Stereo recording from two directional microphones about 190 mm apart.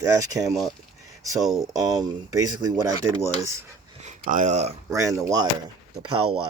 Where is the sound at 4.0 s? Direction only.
40° right (ahead or behind).